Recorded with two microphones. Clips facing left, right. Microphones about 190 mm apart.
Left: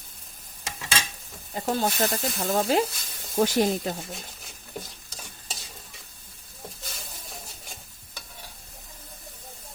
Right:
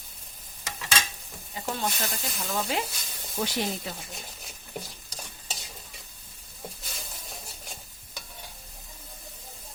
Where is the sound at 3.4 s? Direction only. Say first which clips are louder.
Left 8 dB; 45° left (ahead or behind).